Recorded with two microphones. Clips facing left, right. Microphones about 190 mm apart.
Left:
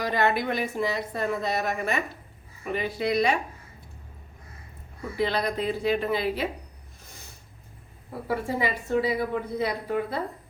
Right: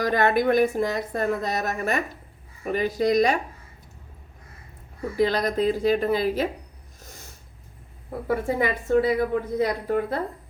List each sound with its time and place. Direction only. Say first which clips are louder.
0.0 s speech: right 4 dB; 50° right (ahead or behind)
5.1 s speech: right 4 dB; 40° right (ahead or behind)
8.3 s speech: right 3 dB; 50° right (ahead or behind)